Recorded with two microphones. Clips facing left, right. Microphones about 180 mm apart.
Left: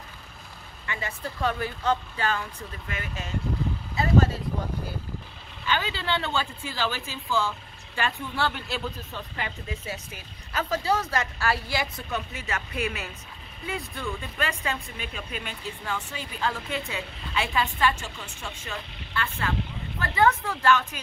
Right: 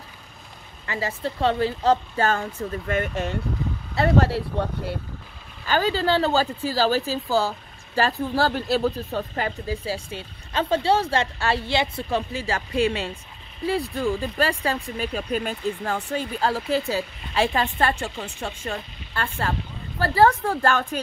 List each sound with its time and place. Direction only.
0.8 s speech: 30° right (ahead or behind)
2.9 s speech: 60° right (ahead or behind)
5.7 s speech: 40° right (ahead or behind)
9.7 s speech: 30° right (ahead or behind)
18.1 s speech: 50° right (ahead or behind)